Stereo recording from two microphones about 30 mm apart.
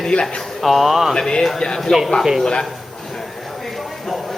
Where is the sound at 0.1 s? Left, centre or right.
Left.